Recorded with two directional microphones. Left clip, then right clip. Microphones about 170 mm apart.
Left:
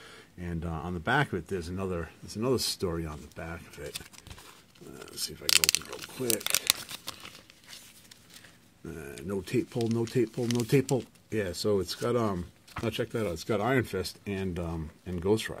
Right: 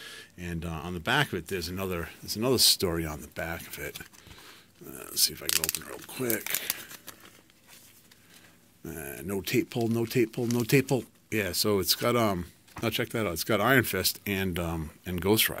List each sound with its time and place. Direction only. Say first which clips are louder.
0.0 s speech: right 3 dB; 10° left (ahead or behind)
2.9 s speech: right 4 dB; 15° right (ahead or behind)
4.9 s speech: right 9 dB; 10° right (ahead or behind)
5.5 s speech: left 6 dB; 30° left (ahead or behind)
9.0 s speech: right 2 dB; 5° right (ahead or behind)